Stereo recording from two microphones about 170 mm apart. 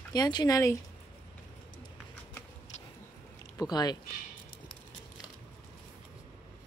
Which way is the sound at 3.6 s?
25° left (ahead or behind).